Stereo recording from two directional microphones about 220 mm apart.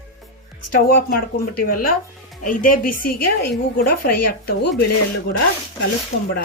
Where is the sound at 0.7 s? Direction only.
45° left (ahead or behind).